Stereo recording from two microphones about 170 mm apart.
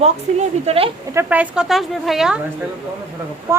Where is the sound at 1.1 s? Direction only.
10° right (ahead or behind).